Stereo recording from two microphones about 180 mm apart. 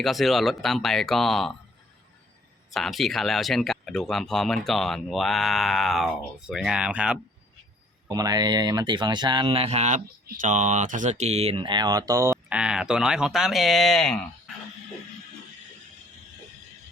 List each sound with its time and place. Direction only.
0.0 s speech: centre (ahead or behind)
2.7 s speech: centre (ahead or behind)
8.1 s speech: 20° right (ahead or behind); by 14.5 s 5° left (ahead or behind)